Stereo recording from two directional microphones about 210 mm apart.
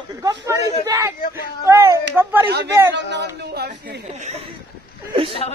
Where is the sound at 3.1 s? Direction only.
55° right (ahead or behind).